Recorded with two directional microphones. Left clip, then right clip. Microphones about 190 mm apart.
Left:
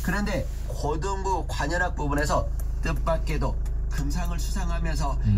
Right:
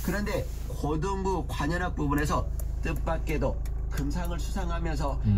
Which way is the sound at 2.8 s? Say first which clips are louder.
Left 5 dB; 45° left (ahead or behind).